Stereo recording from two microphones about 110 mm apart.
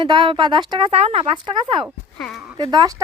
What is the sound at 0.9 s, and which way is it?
Speech, 65° right (ahead or behind).